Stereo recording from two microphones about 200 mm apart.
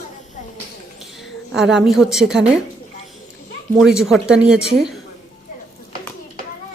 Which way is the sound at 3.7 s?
Centre (ahead or behind).